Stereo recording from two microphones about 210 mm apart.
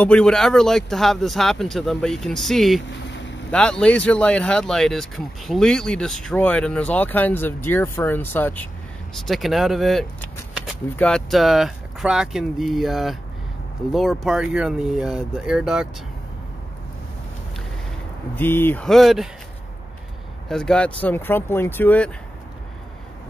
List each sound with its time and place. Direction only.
0.0 s speech: 5° left (ahead or behind)
18.3 s speech: 10° left (ahead or behind)
20.4 s speech: 5° left (ahead or behind)